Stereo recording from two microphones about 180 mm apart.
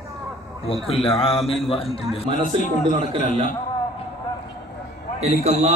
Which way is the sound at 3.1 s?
35° right (ahead or behind).